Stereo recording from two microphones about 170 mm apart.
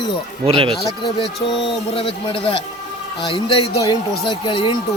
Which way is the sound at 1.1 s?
30° left (ahead or behind).